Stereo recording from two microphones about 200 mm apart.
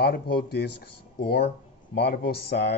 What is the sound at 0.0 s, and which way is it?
A man's voice, 50° left (ahead or behind).